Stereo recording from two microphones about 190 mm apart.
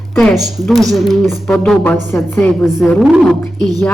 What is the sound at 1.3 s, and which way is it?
A woman's voice, 15° left (ahead or behind).